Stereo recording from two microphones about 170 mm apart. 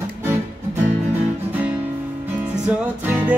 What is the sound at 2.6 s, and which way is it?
Music, 10° right (ahead or behind).